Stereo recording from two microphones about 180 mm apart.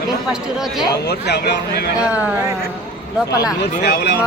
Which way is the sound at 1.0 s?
65° left (ahead or behind).